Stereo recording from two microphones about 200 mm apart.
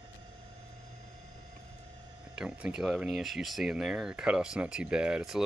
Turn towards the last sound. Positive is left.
turn(degrees=-5)  # may be behind; listen again after turning